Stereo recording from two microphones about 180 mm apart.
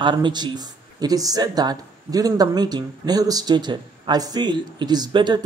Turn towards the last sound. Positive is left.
turn(degrees=-25)  # may be behind; listen again after turning